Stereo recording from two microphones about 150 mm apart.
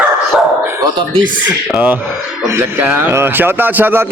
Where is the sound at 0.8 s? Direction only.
30° right (ahead or behind).